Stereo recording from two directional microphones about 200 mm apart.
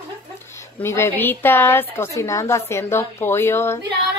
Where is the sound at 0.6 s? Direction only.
15° left (ahead or behind).